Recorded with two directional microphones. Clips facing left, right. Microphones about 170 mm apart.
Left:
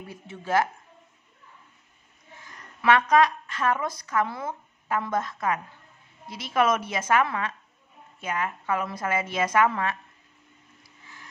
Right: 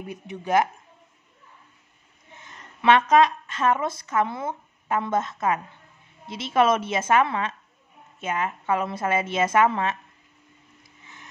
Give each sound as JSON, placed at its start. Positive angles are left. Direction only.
{"t": 0.0, "sound": "a woman's voice", "side_deg": -20}
{"t": 2.3, "sound": "a woman's voice", "side_deg": -25}